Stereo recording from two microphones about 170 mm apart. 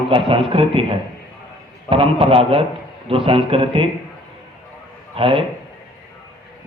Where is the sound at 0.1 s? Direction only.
30° right (ahead or behind).